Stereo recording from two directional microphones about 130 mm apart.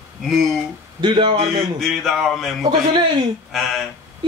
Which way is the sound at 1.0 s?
35° right (ahead or behind).